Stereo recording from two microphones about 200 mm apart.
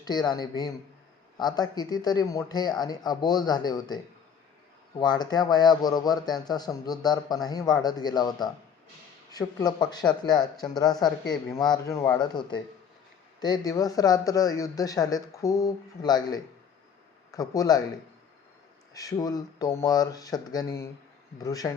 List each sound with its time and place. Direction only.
0.0 s a man's voice: 20° left (ahead or behind)
18.9 s speech: 20° left (ahead or behind)